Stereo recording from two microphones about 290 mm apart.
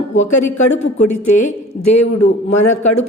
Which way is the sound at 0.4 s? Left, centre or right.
Left.